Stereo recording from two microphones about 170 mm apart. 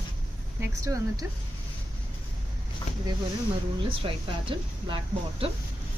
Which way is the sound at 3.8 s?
30° right (ahead or behind).